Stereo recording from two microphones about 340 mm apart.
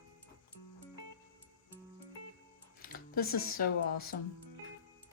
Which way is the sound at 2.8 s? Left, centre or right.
Left.